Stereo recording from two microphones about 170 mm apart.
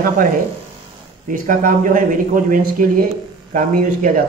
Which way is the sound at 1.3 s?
50° right (ahead or behind).